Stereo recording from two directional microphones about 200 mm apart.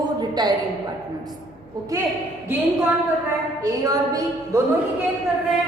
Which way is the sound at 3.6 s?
15° right (ahead or behind).